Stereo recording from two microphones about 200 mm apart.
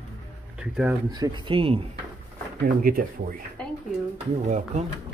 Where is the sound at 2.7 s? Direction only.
45° right (ahead or behind).